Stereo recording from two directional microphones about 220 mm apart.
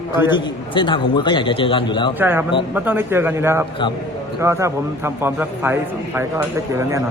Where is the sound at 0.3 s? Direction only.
20° left (ahead or behind).